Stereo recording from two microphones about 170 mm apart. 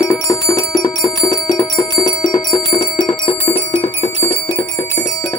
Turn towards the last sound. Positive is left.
turn(degrees=30)  # may be behind; listen again after turning